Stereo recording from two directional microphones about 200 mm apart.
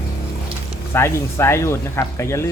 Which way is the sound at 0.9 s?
15° left (ahead or behind).